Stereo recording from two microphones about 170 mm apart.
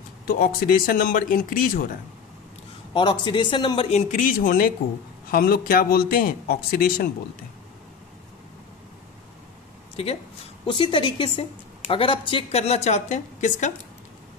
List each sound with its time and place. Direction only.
0.3 s speech: 60° left (ahead or behind)
2.9 s speech: 30° left (ahead or behind)
4.1 s speech: 50° left (ahead or behind)
10.7 s a woman's voice: 30° left (ahead or behind); by 13.7 s 45° left (ahead or behind)